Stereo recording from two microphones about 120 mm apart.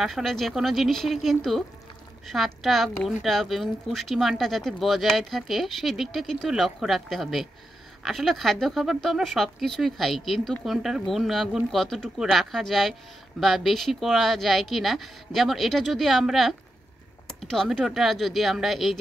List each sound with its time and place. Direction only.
0.0 s a woman's voice: centre (ahead or behind)